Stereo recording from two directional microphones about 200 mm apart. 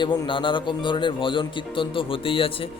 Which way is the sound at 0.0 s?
25° left (ahead or behind).